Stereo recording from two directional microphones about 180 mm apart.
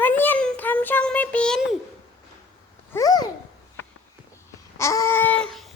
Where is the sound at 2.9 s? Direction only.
20° left (ahead or behind).